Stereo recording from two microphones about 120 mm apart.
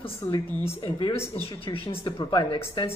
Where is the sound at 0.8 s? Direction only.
45° left (ahead or behind).